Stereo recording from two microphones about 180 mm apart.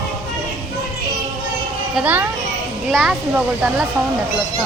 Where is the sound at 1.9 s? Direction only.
10° right (ahead or behind).